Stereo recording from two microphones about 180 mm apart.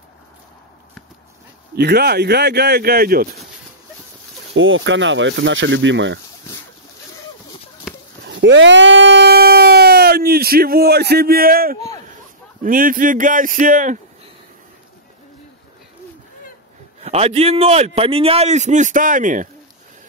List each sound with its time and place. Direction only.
1.8 s speech: 65° right (ahead or behind)
4.6 s speech: 90° right
7.9 s a sound: 5° right (ahead or behind)
8.3 s speech: 90° right; by 13.9 s 45° right (ahead or behind)
17.0 s a man's voice: 35° right (ahead or behind)